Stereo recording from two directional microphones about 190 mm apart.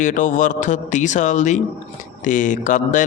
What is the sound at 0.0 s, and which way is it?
Speech, 40° left (ahead or behind).